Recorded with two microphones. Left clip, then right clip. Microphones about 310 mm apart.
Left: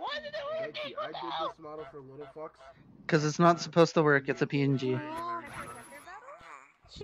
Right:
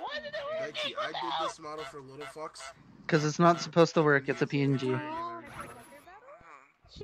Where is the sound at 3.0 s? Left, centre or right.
Centre.